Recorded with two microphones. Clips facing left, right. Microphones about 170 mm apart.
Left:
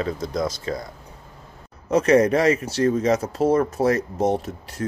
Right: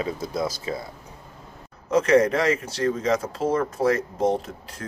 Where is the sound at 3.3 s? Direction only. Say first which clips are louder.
Left 5 dB; 40° left (ahead or behind).